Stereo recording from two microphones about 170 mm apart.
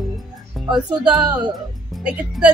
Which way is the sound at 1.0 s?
25° right (ahead or behind).